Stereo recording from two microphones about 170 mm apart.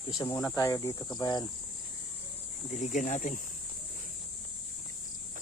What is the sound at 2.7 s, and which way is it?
Speech, 45° left (ahead or behind).